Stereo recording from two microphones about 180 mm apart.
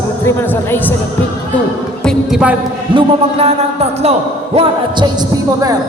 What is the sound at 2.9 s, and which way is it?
A man's voice, 35° right (ahead or behind).